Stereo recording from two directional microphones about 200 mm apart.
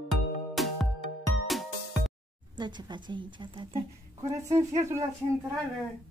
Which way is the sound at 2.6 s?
20° right (ahead or behind).